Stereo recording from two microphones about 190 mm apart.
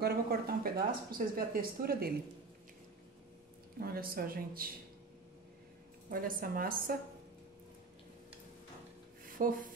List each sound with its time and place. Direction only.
0.0 s speech: 55° right (ahead or behind)
3.8 s speech: 50° right (ahead or behind)
6.0 s speech: 45° right (ahead or behind)
9.4 s speech: 45° right (ahead or behind)